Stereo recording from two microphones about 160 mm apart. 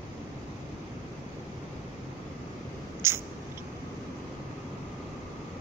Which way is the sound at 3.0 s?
15° right (ahead or behind).